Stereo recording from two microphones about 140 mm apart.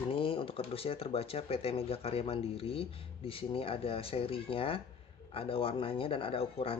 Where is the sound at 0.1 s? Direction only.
40° left (ahead or behind).